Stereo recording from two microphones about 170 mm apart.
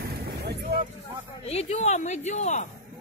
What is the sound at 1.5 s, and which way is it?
Speech, 40° left (ahead or behind).